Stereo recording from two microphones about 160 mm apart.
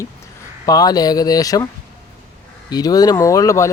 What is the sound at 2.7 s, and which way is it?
Speech, 25° left (ahead or behind).